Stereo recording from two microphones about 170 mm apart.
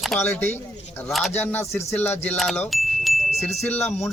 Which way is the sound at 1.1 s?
Centre (ahead or behind).